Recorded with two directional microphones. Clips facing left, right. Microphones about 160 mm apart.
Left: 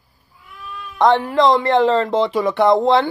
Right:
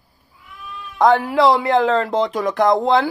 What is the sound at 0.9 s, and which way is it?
Speech, centre (ahead or behind).